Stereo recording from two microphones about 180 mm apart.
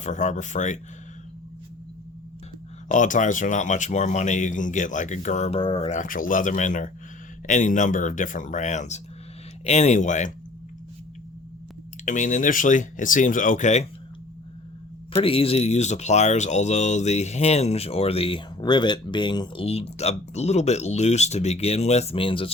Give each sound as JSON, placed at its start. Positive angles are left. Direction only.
{"t": 0.0, "sound": "speech", "side_deg": 40}
{"t": 2.9, "sound": "speech", "side_deg": 45}
{"t": 12.0, "sound": "speech", "side_deg": 45}
{"t": 15.1, "sound": "speech", "side_deg": 30}